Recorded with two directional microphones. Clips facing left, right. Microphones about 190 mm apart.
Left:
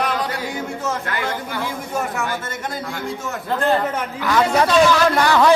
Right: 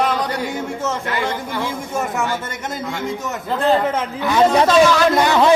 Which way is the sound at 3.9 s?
25° right (ahead or behind).